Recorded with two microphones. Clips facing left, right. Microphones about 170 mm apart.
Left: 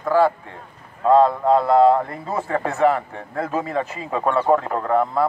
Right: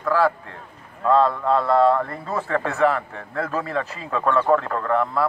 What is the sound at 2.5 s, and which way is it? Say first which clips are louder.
Speech: even; 30° left (ahead or behind).